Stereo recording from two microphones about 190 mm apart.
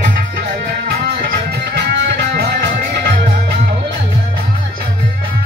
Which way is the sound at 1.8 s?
60° right (ahead or behind).